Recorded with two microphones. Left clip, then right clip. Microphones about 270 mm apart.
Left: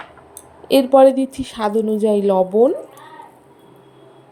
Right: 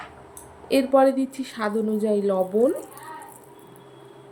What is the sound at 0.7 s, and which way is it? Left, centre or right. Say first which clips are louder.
Speech: left 7 dB; left.